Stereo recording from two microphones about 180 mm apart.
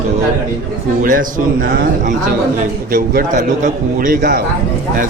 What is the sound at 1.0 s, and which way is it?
Speech, 50° right (ahead or behind).